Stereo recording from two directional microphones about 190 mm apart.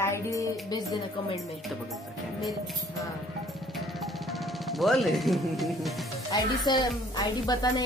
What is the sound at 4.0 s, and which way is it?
Music, centre (ahead or behind).